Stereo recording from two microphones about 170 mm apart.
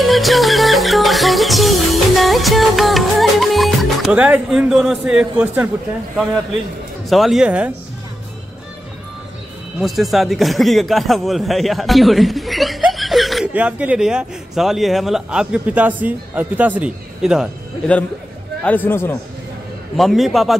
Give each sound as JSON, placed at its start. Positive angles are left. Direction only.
{"t": 0.0, "sound": "music", "side_deg": 0}
{"t": 7.1, "sound": "speech", "side_deg": 0}
{"t": 9.8, "sound": "a man's voice", "side_deg": 0}
{"t": 18.6, "sound": "a man's voice", "side_deg": 10}
{"t": 20.0, "sound": "speech", "side_deg": 0}